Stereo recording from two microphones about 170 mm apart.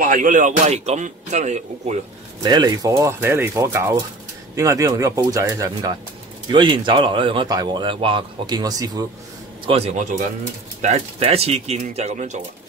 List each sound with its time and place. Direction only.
0.0 s a man's voice: 50° right (ahead or behind)
2.4 s a man's voice: 25° right (ahead or behind)
9.7 s speech: 40° right (ahead or behind)